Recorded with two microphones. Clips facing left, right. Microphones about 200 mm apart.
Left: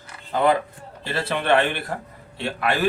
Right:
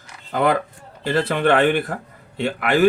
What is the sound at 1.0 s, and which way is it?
Speech, 50° right (ahead or behind).